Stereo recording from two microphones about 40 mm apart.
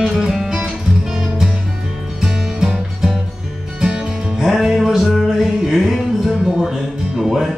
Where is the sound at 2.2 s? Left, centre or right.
Centre.